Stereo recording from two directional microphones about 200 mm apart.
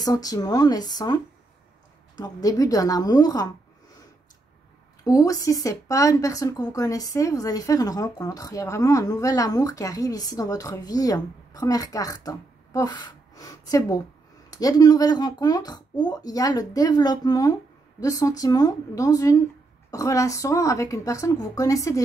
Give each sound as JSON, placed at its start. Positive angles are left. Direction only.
{"t": 0.0, "sound": "speech", "side_deg": 20}
{"t": 5.0, "sound": "speech", "side_deg": 15}